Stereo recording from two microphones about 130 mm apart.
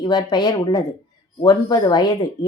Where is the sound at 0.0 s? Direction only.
35° left (ahead or behind).